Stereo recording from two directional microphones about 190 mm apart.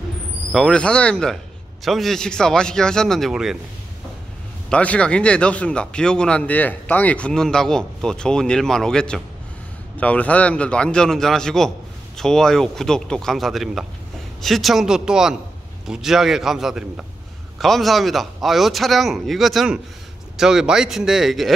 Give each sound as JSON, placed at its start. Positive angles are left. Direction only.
{"t": 0.5, "sound": "speech", "side_deg": 5}
{"t": 4.6, "sound": "speech", "side_deg": 5}